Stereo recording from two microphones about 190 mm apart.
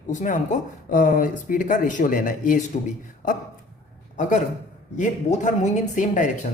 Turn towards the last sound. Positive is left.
turn(degrees=40)  # may be behind; listen again after turning